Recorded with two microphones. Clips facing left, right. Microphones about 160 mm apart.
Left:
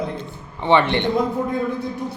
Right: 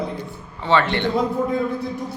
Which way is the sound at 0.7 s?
20° left (ahead or behind).